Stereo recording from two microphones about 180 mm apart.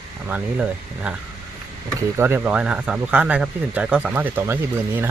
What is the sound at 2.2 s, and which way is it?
Speech, 10° right (ahead or behind).